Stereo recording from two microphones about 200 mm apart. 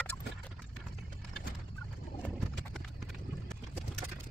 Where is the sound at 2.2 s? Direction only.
Centre (ahead or behind).